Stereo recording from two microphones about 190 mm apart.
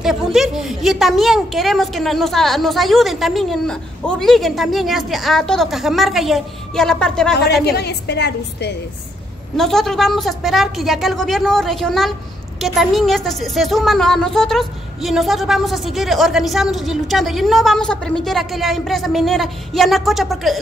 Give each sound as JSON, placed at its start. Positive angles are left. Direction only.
{"t": 0.0, "sound": "speech", "side_deg": 0}
{"t": 7.6, "sound": "a woman's voice", "side_deg": 60}
{"t": 9.6, "sound": "speech", "side_deg": 0}